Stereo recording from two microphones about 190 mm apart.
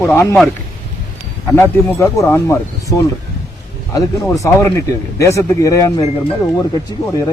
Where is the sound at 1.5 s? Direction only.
15° left (ahead or behind).